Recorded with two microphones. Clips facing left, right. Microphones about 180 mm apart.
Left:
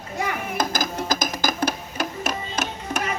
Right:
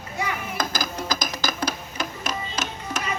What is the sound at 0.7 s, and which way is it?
Music, 50° left (ahead or behind).